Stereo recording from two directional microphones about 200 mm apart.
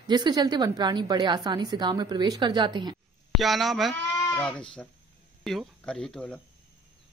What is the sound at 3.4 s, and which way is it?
Speech, centre (ahead or behind).